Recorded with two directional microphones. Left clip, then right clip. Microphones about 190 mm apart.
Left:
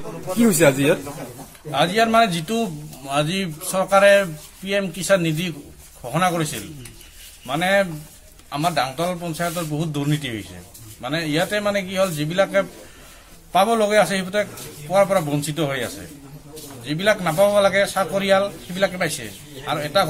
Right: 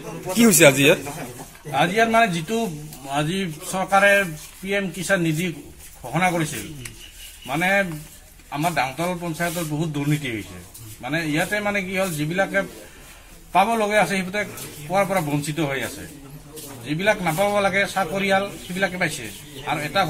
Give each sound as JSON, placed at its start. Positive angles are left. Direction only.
{"t": 0.4, "sound": "speech", "side_deg": 0}
{"t": 1.7, "sound": "a man's voice", "side_deg": 15}